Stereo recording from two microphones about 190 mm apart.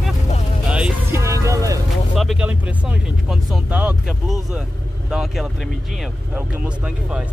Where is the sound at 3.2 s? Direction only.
5° right (ahead or behind).